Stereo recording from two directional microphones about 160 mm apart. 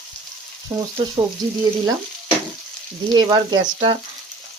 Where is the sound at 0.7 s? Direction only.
15° right (ahead or behind).